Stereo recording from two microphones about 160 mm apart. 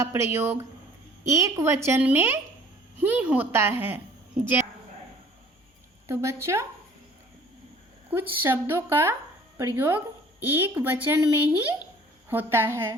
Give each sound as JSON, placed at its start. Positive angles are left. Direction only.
{"t": 0.0, "sound": "a woman's voice", "side_deg": -15}
{"t": 6.1, "sound": "a woman's voice", "side_deg": -15}
{"t": 8.1, "sound": "a woman's voice", "side_deg": -15}